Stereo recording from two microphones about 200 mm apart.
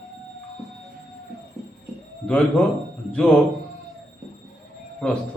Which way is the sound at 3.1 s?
5° left (ahead or behind).